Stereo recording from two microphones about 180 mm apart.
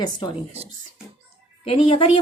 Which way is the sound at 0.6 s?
35° right (ahead or behind).